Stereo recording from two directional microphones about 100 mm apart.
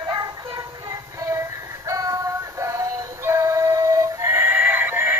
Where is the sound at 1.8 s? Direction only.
35° right (ahead or behind).